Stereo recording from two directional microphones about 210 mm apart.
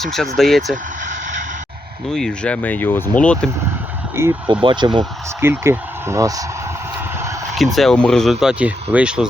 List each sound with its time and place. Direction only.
0.0 s speech: centre (ahead or behind)
2.0 s speech: 5° left (ahead or behind)
4.1 s speech: 10° right (ahead or behind)
4.6 s speech: 20° right (ahead or behind)
5.4 s speech: 10° right (ahead or behind)
7.5 s speech: centre (ahead or behind)